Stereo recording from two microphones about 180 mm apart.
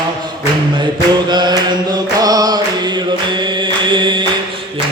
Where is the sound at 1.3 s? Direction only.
25° right (ahead or behind).